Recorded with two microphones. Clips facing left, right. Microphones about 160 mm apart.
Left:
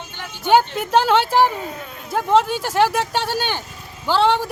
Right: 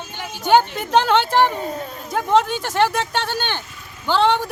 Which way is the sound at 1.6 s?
35° right (ahead or behind).